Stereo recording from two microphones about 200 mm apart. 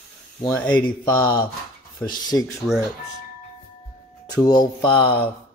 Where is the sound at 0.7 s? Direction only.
20° left (ahead or behind).